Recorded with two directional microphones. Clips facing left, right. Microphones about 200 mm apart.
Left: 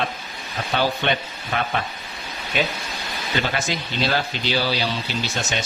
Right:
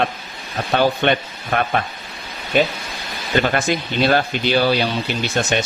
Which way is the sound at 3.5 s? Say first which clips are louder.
Right 6 dB; 55° right (ahead or behind).